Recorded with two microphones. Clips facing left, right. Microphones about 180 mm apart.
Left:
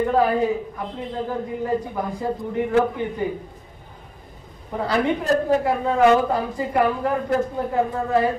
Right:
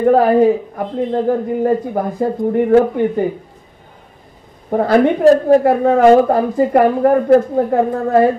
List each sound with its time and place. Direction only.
0.0 s a man's voice: 55° right (ahead or behind)
4.6 s a man's voice: 50° right (ahead or behind)